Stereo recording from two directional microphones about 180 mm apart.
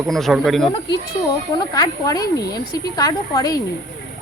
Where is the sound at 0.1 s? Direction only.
Centre (ahead or behind).